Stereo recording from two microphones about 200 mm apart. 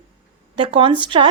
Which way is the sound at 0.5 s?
25° right (ahead or behind).